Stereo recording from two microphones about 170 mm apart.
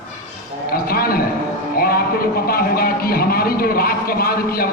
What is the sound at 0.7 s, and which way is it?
Speech, 60° left (ahead or behind).